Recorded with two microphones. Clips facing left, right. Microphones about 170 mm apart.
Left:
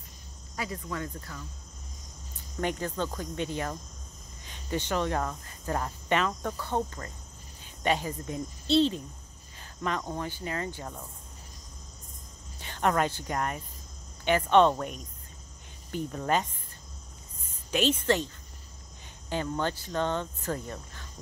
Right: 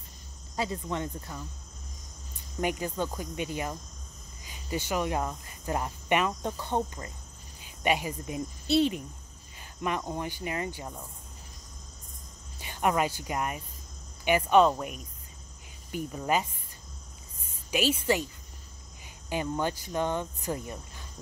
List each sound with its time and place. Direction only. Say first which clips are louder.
0.6 s speech: right 3 dB; 25° right (ahead or behind)
2.6 s speech: right 1 dB; 10° right (ahead or behind)
12.5 s speech: even; 10° right (ahead or behind)
17.6 s speech: left 1 dB; 10° right (ahead or behind)